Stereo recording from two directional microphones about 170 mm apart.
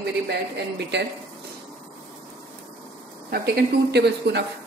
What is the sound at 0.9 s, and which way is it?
Speech, 85° right.